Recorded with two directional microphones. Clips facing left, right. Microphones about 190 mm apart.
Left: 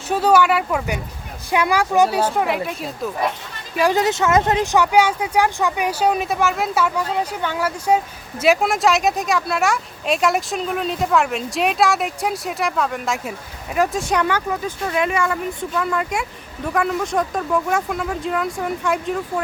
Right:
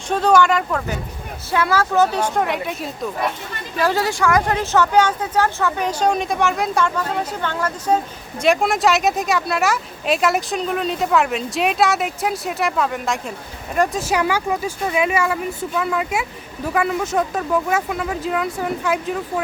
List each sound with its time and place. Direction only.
0.1 s speech: 10° left (ahead or behind)
3.8 s speech: 15° left (ahead or behind); by 19.1 s 5° right (ahead or behind)